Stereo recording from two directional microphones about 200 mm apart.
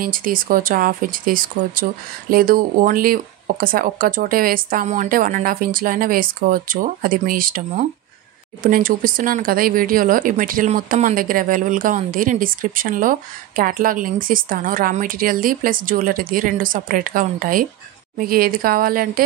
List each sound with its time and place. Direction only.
0.0 s speech: 45° right (ahead or behind)